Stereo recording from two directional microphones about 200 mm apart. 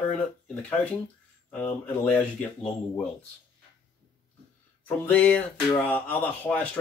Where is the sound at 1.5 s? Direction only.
10° left (ahead or behind).